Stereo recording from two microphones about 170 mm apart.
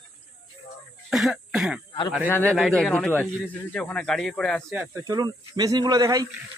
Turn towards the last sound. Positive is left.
turn(degrees=-20)  # may be behind; listen again after turning